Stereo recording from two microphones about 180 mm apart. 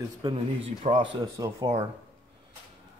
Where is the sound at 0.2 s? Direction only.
30° right (ahead or behind).